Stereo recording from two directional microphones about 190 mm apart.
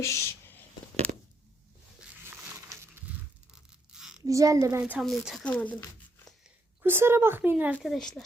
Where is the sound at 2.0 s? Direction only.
5° right (ahead or behind).